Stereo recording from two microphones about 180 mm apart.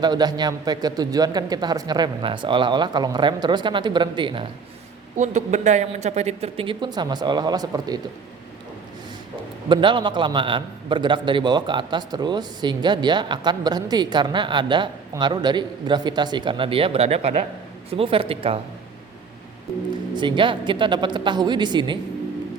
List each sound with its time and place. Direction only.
0.0 s a man's voice: 20° right (ahead or behind)
5.1 s speech: 40° right (ahead or behind); by 7.9 s 20° right (ahead or behind)
9.6 s a man's voice: 25° right (ahead or behind)
20.1 s a man's voice: 25° right (ahead or behind)